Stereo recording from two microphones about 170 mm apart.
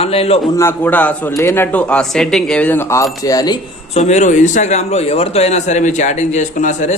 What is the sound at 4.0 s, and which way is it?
A man's voice, 45° left (ahead or behind).